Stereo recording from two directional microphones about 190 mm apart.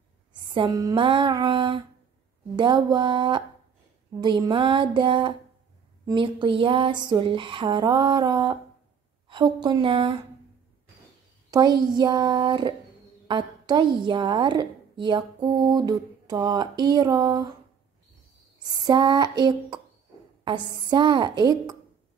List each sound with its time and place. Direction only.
0.3 s a woman's voice: 25° right (ahead or behind)
11.5 s a woman's voice: 20° right (ahead or behind)
18.9 s a woman's voice: 20° right (ahead or behind)